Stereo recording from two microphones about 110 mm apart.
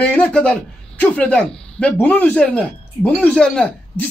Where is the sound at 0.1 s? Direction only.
10° left (ahead or behind).